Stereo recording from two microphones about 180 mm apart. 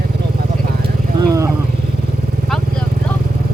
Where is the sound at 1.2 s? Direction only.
20° right (ahead or behind).